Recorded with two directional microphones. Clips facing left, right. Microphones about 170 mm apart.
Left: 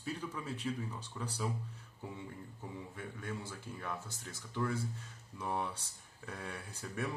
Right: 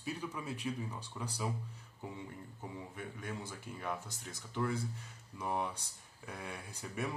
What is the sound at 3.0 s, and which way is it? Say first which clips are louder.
Speech: left 1 dB; 15° right (ahead or behind).